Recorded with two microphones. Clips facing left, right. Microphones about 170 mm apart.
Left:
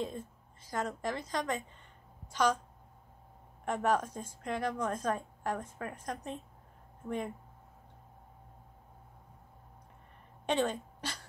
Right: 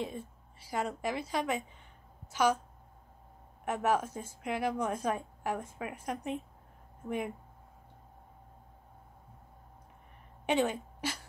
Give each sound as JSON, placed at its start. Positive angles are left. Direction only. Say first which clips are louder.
{"t": 0.6, "sound": "a woman's voice", "louder": "right 1 dB", "side_deg": -10}
{"t": 3.6, "sound": "a woman's voice", "louder": "even", "side_deg": -10}
{"t": 10.4, "sound": "a woman's voice", "louder": "right 2 dB", "side_deg": -10}